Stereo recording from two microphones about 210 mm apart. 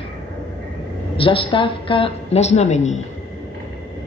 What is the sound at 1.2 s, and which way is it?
A woman's voice, 25° left (ahead or behind).